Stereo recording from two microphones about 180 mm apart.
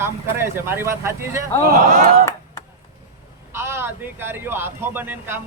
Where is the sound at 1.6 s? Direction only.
55° right (ahead or behind).